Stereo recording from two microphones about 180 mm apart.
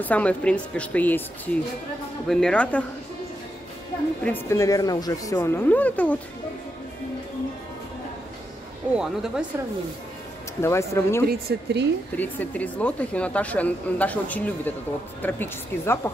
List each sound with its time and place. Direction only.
0.0 s a woman's voice: 10° left (ahead or behind)
4.2 s a woman's voice: 10° left (ahead or behind)
8.9 s speech: 5° right (ahead or behind)
10.6 s a woman's voice: 15° left (ahead or behind)
11.2 s a woman's voice: 60° right (ahead or behind)
12.2 s a woman's voice: 10° left (ahead or behind)